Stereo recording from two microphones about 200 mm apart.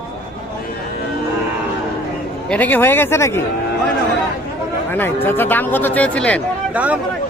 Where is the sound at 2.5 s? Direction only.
10° left (ahead or behind).